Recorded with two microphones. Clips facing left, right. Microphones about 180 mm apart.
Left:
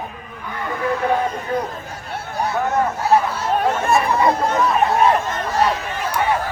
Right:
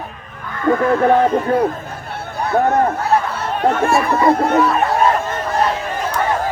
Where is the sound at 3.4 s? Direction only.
60° right (ahead or behind).